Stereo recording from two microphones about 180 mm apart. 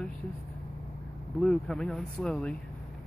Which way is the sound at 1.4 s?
5° left (ahead or behind).